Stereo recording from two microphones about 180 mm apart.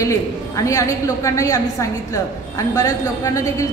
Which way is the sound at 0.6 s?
15° left (ahead or behind).